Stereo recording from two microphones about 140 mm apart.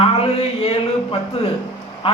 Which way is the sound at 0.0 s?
45° left (ahead or behind).